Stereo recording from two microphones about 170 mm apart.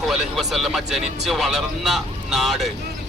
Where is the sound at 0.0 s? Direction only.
Centre (ahead or behind).